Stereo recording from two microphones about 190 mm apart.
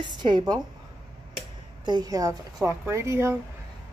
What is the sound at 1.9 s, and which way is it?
A woman's voice, 20° right (ahead or behind).